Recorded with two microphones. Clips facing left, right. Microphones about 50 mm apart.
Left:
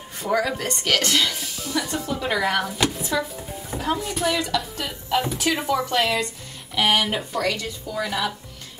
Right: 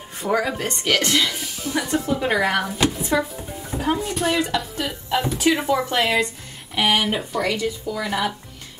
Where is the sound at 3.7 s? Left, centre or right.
Centre.